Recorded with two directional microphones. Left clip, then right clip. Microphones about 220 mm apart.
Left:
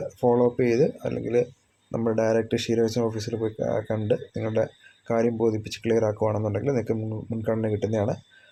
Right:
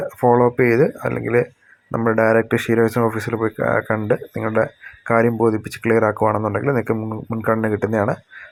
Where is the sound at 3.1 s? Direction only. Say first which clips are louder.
Right 8 dB; 30° right (ahead or behind).